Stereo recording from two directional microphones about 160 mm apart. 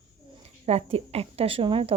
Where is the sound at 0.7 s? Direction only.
40° right (ahead or behind).